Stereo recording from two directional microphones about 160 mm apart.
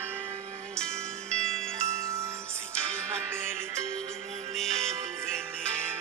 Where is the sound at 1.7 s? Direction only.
15° right (ahead or behind).